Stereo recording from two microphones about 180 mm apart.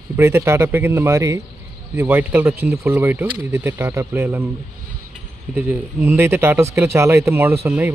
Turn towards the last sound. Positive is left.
turn(degrees=-15)  # may be behind; listen again after turning